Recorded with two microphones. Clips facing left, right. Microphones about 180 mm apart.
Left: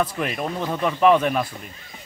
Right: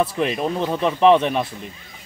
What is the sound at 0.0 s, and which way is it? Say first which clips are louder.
A man's voice: right 4 dB; 30° right (ahead or behind).